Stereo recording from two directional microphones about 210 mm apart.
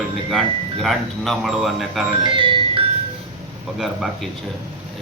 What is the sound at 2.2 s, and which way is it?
Music, 25° right (ahead or behind).